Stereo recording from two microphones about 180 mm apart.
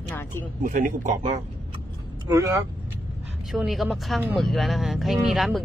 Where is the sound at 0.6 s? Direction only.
50° right (ahead or behind).